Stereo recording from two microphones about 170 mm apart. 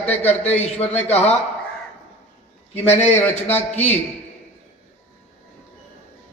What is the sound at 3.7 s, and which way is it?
Speech, 40° left (ahead or behind).